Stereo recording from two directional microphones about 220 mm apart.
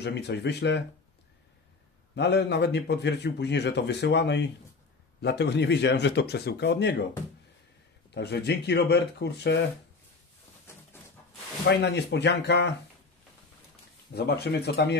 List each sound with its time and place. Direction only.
0.0 s a man's voice: 50° left (ahead or behind)
2.1 s a man's voice: 50° left (ahead or behind)
8.1 s a man's voice: 50° left (ahead or behind)
11.7 s a man's voice: 50° left (ahead or behind)
14.1 s a man's voice: 45° left (ahead or behind)